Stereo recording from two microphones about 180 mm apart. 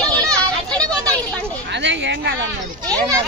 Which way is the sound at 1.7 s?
85° right.